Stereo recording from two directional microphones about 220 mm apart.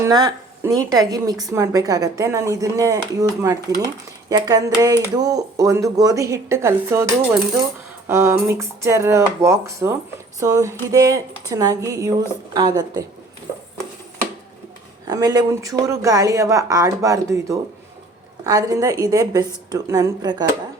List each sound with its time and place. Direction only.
0.0 s a woman's voice: 15° right (ahead or behind)
15.0 s a woman's voice: 15° right (ahead or behind)